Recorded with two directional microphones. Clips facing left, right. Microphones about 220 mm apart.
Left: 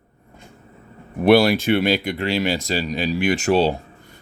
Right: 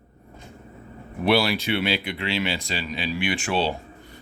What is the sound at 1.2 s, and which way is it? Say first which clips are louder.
Speech: left 7 dB; 50° left (ahead or behind).